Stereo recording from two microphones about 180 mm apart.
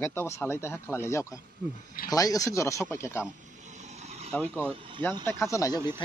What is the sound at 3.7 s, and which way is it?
Vehicle, 40° right (ahead or behind).